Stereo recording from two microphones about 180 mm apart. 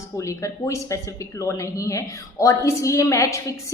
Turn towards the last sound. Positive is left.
turn(degrees=15)  # may be behind; listen again after turning